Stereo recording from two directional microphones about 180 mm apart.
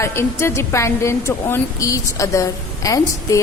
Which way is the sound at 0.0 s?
15° left (ahead or behind).